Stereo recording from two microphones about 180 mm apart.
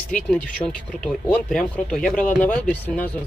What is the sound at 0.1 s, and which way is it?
Speech, 5° left (ahead or behind).